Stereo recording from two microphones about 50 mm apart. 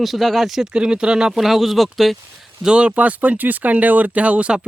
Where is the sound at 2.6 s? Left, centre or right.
Right.